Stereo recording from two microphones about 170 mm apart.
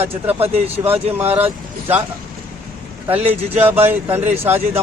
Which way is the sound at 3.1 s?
10° right (ahead or behind).